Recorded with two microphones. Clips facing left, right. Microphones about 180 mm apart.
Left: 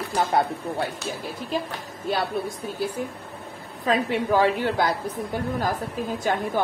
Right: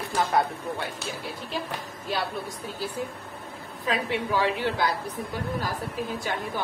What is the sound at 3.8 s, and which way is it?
A woman's voice, 45° left (ahead or behind).